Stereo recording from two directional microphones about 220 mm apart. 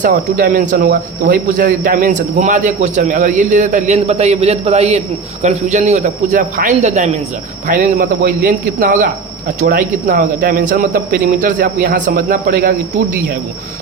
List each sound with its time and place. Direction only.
0.0 s speech: 40° right (ahead or behind)